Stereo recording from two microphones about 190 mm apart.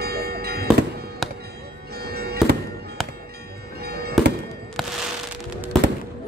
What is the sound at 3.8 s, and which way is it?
Music, 55° right (ahead or behind).